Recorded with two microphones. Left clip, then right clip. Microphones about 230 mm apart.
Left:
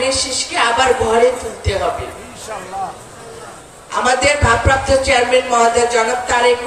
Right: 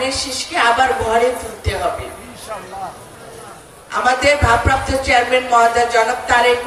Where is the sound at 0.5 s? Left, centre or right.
Centre.